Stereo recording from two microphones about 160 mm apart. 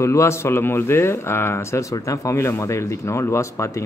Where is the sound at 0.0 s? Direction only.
15° left (ahead or behind).